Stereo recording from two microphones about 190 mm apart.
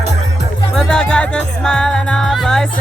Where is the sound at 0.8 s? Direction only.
5° left (ahead or behind).